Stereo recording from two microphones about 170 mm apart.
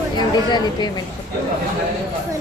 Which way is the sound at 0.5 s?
25° left (ahead or behind).